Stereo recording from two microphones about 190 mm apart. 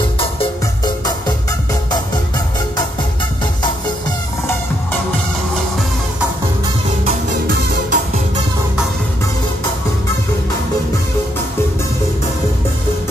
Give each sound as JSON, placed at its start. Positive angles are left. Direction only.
{"t": 0.0, "sound": "music", "side_deg": 25}
{"t": 7.2, "sound": "music", "side_deg": -45}